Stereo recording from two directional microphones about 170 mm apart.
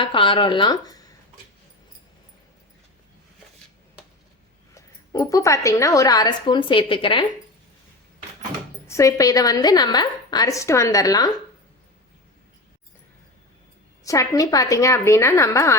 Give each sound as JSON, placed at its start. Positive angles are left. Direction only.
{"t": 0.0, "sound": "a woman's voice", "side_deg": 30}
{"t": 4.7, "sound": "a woman's voice", "side_deg": 20}
{"t": 8.9, "sound": "a woman's voice", "side_deg": 20}
{"t": 14.0, "sound": "a woman's voice", "side_deg": 20}